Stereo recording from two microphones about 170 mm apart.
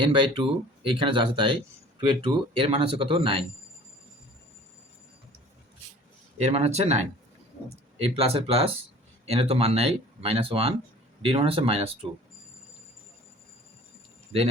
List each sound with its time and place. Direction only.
0.0 s speech: 30° right (ahead or behind)
6.4 s speech: 40° right (ahead or behind)
8.0 s speech: 35° right (ahead or behind)